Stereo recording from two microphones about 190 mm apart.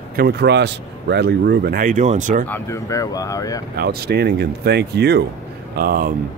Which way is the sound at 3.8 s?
55° right (ahead or behind).